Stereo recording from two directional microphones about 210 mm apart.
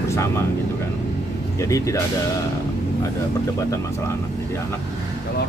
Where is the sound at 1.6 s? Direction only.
15° left (ahead or behind).